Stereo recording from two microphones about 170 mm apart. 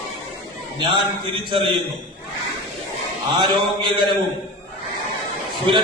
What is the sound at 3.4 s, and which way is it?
Mantra, 25° right (ahead or behind).